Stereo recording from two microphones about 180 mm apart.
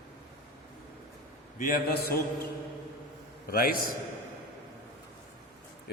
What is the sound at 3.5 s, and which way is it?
Speech, 55° left (ahead or behind).